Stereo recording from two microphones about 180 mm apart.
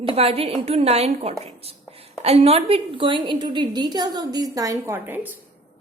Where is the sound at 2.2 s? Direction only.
35° right (ahead or behind); by 5.2 s 10° right (ahead or behind).